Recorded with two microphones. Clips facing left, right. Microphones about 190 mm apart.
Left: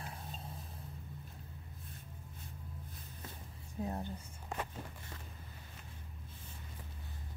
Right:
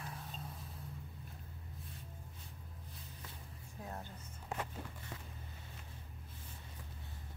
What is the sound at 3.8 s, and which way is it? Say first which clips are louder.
Speech: left 9 dB; 25° left (ahead or behind).